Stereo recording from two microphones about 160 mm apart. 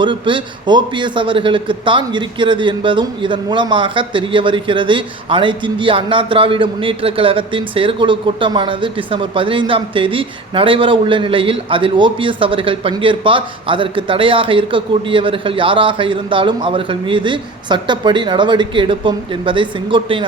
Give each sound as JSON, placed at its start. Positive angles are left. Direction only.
{"t": 0.0, "sound": "a man's voice", "side_deg": -30}